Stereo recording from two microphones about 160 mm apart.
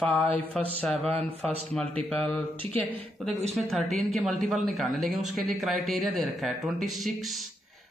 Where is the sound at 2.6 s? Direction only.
35° right (ahead or behind).